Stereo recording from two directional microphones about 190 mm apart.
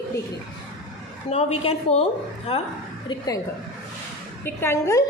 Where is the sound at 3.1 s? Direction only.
20° left (ahead or behind).